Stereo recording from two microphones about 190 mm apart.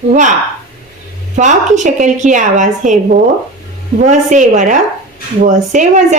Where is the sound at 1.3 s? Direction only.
40° right (ahead or behind).